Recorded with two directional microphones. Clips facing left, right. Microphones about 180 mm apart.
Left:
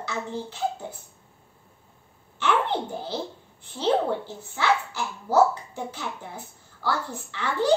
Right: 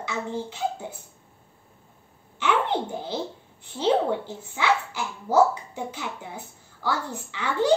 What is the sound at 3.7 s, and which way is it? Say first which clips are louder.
Speech: right 1 dB; 15° right (ahead or behind).